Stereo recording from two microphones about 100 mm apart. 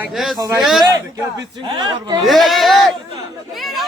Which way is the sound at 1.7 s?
50° right (ahead or behind).